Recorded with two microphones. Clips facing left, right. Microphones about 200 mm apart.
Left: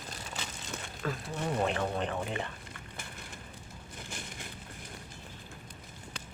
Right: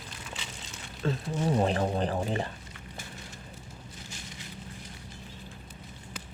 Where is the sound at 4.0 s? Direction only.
55° left (ahead or behind).